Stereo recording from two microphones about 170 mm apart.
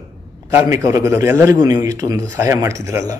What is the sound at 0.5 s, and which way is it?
A man's voice, 10° right (ahead or behind).